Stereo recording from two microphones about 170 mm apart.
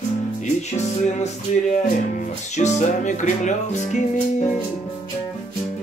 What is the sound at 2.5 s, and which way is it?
Music, 40° left (ahead or behind).